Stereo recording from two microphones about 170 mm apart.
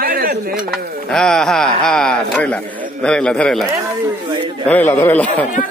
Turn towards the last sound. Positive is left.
turn(degrees=10)  # may be behind; listen again after turning